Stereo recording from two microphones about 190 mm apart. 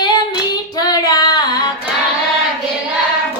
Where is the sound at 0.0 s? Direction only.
20° left (ahead or behind).